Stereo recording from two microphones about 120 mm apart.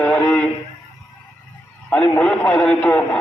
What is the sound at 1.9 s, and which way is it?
A man's voice, 15° left (ahead or behind).